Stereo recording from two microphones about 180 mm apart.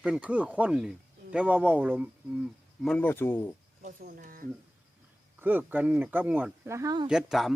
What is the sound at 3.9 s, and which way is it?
Speech, 50° right (ahead or behind).